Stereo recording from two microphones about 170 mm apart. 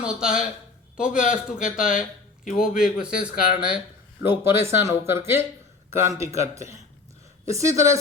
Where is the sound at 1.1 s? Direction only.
50° left (ahead or behind).